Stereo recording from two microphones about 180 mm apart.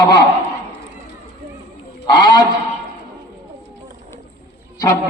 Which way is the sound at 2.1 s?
20° left (ahead or behind).